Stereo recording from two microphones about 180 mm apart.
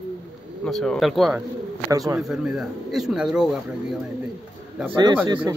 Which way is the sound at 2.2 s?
5° right (ahead or behind).